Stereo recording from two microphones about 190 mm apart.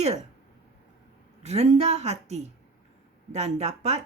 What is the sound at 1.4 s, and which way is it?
A woman's voice, 35° right (ahead or behind).